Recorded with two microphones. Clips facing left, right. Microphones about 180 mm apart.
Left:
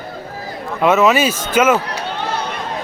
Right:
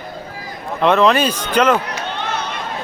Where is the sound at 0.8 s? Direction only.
5° left (ahead or behind).